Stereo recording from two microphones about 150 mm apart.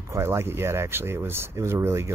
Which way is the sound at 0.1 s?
15° right (ahead or behind).